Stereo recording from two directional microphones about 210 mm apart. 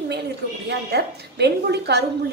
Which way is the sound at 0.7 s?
50° right (ahead or behind).